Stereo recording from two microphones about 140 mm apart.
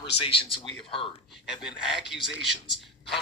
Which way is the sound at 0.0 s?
40° left (ahead or behind).